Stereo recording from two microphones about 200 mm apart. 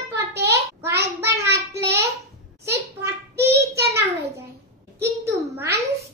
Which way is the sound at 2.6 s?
15° right (ahead or behind).